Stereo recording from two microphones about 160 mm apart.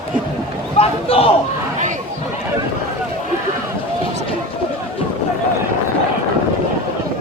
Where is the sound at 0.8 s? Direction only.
35° left (ahead or behind).